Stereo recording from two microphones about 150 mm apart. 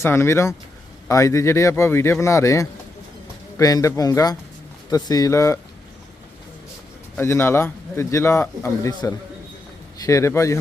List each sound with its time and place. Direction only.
0.0 s speech: 15° left (ahead or behind)
7.2 s speech: 15° left (ahead or behind)